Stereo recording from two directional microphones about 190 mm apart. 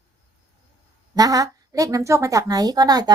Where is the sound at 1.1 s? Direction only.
20° right (ahead or behind).